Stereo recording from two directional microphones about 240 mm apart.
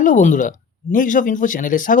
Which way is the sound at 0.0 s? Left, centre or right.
Left.